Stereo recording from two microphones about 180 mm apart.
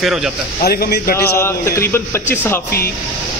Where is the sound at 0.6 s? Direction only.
60° left (ahead or behind).